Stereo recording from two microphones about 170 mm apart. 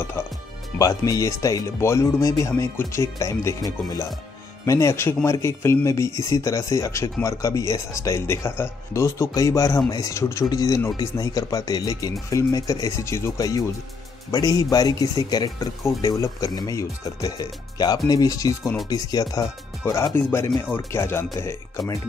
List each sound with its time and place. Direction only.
0.7 s speech: 20° left (ahead or behind)